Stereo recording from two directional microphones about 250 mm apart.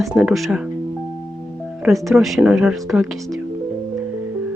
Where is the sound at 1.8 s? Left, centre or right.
Centre.